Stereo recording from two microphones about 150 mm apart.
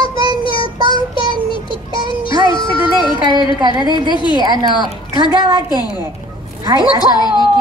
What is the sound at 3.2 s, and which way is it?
Child singing, 35° left (ahead or behind).